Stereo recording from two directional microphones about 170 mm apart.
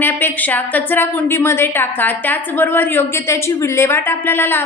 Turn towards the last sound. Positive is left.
turn(degrees=10)  # may be behind; listen again after turning